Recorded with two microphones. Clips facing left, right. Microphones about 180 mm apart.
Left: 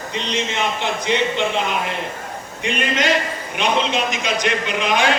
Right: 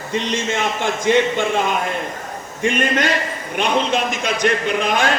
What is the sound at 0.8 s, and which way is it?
Speech, 50° right (ahead or behind).